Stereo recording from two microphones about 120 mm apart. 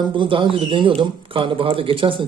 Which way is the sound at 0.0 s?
40° right (ahead or behind).